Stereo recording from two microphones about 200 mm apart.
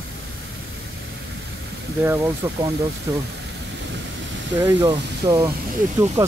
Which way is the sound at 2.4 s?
15° right (ahead or behind).